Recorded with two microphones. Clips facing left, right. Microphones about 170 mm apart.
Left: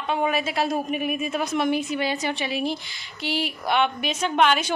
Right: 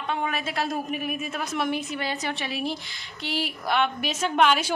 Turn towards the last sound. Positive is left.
turn(degrees=-5)  # may be behind; listen again after turning